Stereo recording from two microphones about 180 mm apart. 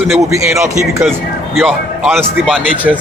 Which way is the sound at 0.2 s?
15° right (ahead or behind).